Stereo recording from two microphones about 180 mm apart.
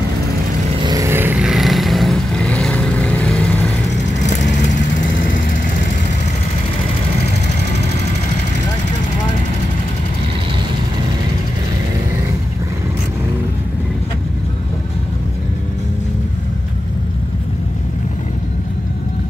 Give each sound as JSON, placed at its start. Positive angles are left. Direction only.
{"t": 0.7, "sound": "vehicle", "side_deg": -20}
{"t": 4.2, "sound": "vehicle", "side_deg": 40}